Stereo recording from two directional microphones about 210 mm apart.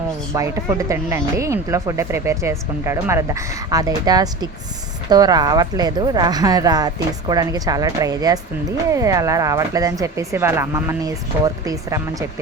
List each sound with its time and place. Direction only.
0.3 s speech: 15° right (ahead or behind)